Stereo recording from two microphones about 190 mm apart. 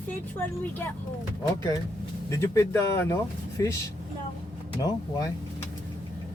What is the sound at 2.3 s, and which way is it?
Speech, 15° left (ahead or behind).